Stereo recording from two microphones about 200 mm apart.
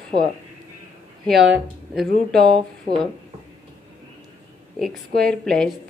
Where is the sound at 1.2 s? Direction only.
5° right (ahead or behind).